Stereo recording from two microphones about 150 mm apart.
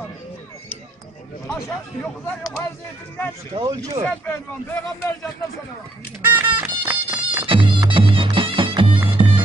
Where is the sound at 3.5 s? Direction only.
25° right (ahead or behind).